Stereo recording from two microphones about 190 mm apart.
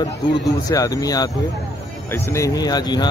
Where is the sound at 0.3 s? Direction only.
20° left (ahead or behind).